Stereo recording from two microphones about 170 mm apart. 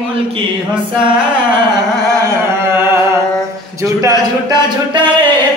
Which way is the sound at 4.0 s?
25° right (ahead or behind).